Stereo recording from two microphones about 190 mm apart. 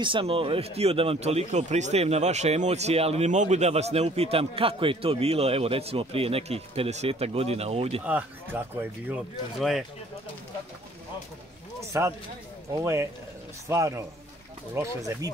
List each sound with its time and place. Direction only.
0.0 s speech: 25° right (ahead or behind)
8.0 s speech: 10° right (ahead or behind)
11.8 s speech: 15° right (ahead or behind)